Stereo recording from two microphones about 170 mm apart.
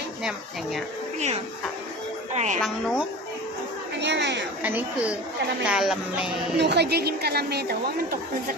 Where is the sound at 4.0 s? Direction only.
90° right.